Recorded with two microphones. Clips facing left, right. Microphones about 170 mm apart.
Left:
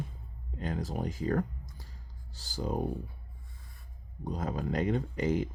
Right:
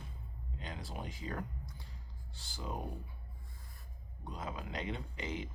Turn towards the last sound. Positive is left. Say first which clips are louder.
# left 11 dB
turn(degrees=45)  # may be behind; listen again after turning